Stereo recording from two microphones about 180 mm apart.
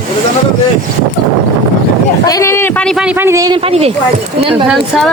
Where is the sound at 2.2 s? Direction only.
15° left (ahead or behind).